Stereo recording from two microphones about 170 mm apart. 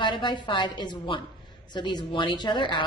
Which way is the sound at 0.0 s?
30° left (ahead or behind).